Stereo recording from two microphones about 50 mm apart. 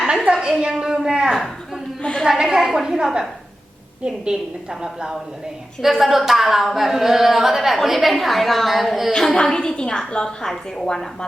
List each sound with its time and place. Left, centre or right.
0.3 s a woman's voice: centre
1.3 s speech: centre
2.2 s a woman's voice: centre
9.1 s a woman's voice: centre